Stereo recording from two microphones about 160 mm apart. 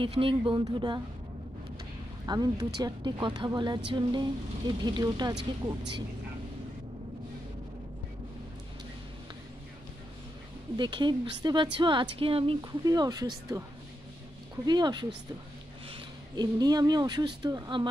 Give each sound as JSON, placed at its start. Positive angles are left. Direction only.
{"t": 0.0, "sound": "speech", "side_deg": -35}
{"t": 2.2, "sound": "speech", "side_deg": -25}
{"t": 10.8, "sound": "speech", "side_deg": -30}
{"t": 12.8, "sound": "speech", "side_deg": -25}